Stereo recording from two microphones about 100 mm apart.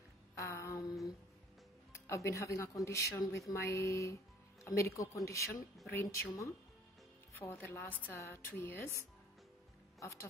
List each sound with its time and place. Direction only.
0.4 s a sound: 30° left (ahead or behind)
2.0 s speech: 30° left (ahead or behind)
7.3 s a woman's voice: 20° left (ahead or behind)